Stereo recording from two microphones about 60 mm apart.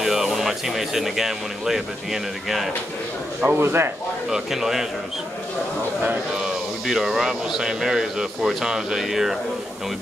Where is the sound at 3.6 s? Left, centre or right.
Right.